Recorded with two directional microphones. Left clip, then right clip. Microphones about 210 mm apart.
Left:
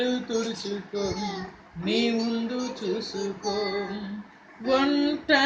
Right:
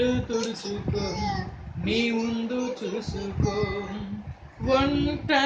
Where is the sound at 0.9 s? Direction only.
10° right (ahead or behind).